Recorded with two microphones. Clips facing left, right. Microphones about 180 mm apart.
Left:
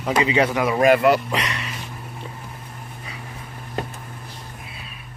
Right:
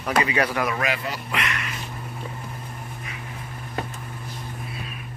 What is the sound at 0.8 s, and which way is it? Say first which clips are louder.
Speech: left 13 dB; 55° left (ahead or behind).